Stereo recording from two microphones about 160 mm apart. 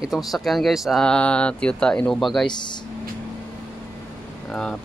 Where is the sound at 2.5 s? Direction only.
25° left (ahead or behind).